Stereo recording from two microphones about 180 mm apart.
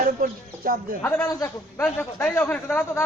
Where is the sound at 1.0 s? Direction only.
10° left (ahead or behind).